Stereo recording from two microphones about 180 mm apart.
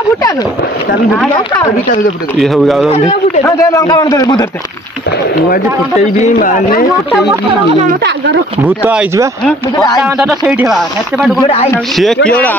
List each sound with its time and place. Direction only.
2.3 s speech: centre (ahead or behind)
3.4 s a man's voice: 15° left (ahead or behind)
6.2 s speech: 45° left (ahead or behind)
8.6 s speech: 10° right (ahead or behind)
9.8 s a man's voice: 20° left (ahead or behind)
10.0 s speech: 5° right (ahead or behind)